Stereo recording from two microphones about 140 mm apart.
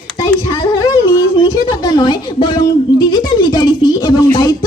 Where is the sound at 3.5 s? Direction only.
30° left (ahead or behind).